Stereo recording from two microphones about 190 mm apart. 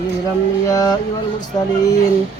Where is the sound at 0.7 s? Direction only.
20° left (ahead or behind).